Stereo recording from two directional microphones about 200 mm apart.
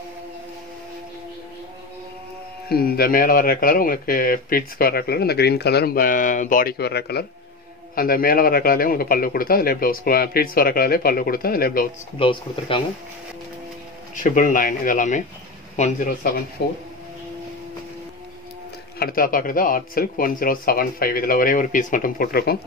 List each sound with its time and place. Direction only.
2.7 s speech: 50° left (ahead or behind)
12.2 s speech: 25° left (ahead or behind)
14.2 s speech: 40° left (ahead or behind)
16.6 s speech: 55° left (ahead or behind)
18.9 s speech: 45° left (ahead or behind)